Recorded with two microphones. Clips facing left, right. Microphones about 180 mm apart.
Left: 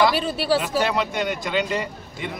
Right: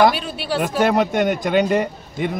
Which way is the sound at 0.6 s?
50° right (ahead or behind).